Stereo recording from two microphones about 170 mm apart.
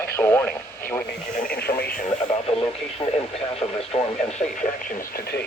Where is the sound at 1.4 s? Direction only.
65° left (ahead or behind).